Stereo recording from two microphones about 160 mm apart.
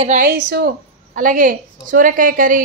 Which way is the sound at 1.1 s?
55° right (ahead or behind).